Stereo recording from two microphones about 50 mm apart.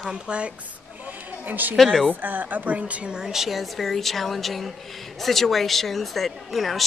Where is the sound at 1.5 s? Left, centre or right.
Right; by 6.8 s centre.